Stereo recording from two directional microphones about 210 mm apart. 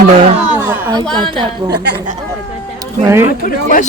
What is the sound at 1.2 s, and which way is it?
Speech, 20° right (ahead or behind).